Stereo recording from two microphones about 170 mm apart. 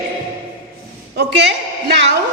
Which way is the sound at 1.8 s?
90° right.